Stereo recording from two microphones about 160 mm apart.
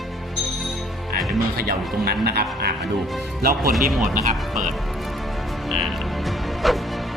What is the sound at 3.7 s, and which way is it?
Speech, centre (ahead or behind).